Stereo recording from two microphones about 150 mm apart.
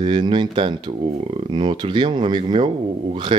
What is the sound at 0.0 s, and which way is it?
Speech, 30° right (ahead or behind).